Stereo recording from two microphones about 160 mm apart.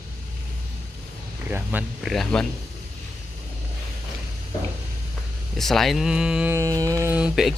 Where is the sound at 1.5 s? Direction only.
10° right (ahead or behind).